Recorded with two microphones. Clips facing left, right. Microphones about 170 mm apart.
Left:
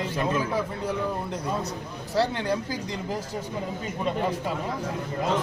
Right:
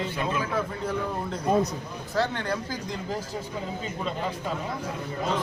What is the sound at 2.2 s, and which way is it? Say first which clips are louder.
Speech: left 2 dB; 10° left (ahead or behind).